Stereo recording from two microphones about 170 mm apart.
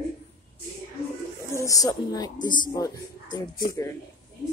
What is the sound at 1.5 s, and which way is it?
Speech, 20° left (ahead or behind).